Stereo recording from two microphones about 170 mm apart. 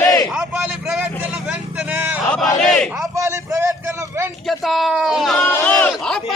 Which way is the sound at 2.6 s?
Centre (ahead or behind).